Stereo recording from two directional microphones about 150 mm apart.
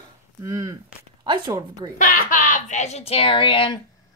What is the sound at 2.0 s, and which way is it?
Speech, 60° left (ahead or behind).